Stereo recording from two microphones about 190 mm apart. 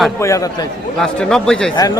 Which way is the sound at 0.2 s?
15° left (ahead or behind).